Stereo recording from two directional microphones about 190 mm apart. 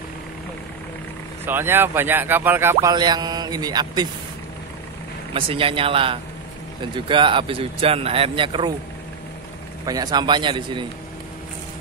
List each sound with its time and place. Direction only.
1.4 s speech: 10° right (ahead or behind)
5.3 s speech: 30° right (ahead or behind)
9.8 s speech: 20° right (ahead or behind)